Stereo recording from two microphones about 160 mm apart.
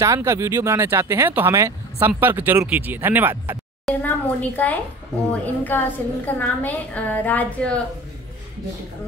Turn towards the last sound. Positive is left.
turn(degrees=10)  # may be behind; listen again after turning